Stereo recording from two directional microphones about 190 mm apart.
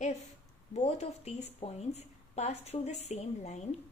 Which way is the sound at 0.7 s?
35° left (ahead or behind).